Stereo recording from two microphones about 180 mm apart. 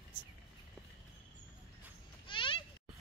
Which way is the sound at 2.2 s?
30° left (ahead or behind).